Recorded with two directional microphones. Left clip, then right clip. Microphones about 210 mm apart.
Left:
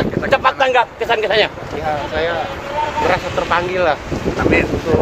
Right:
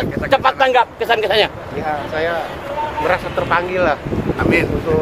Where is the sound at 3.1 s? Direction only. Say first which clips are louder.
Right 2 dB; 15° right (ahead or behind).